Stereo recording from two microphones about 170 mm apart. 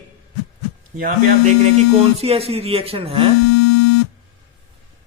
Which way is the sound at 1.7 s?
35° right (ahead or behind).